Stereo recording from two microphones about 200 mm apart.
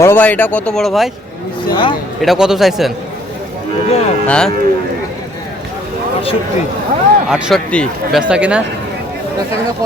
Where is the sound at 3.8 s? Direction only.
30° left (ahead or behind).